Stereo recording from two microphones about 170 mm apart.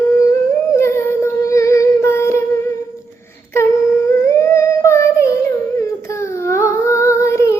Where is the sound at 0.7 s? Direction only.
15° left (ahead or behind).